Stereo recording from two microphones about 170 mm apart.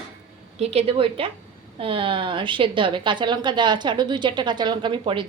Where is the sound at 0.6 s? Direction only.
35° right (ahead or behind).